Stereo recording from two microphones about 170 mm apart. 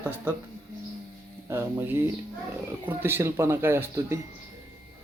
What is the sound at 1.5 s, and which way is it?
Speech, 15° right (ahead or behind).